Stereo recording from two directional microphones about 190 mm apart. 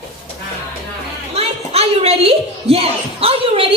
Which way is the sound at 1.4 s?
30° right (ahead or behind).